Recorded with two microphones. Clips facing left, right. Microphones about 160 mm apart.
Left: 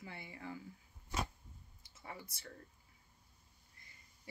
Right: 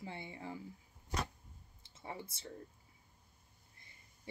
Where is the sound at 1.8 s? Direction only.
25° right (ahead or behind).